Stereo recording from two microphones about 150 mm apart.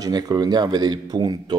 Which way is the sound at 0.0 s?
25° right (ahead or behind).